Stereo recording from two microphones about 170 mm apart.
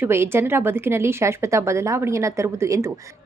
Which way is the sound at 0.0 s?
15° right (ahead or behind).